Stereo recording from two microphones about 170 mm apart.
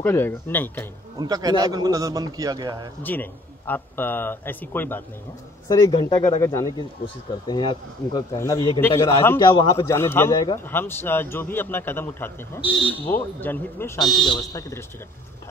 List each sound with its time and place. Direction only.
0.0 s a man's voice: 15° left (ahead or behind)
1.1 s a man's voice: 25° right (ahead or behind)
3.0 s a man's voice: 10° left (ahead or behind)
5.7 s a man's voice: 20° left (ahead or behind)
13.9 s speech: centre (ahead or behind)
14.3 s speech: 20° left (ahead or behind)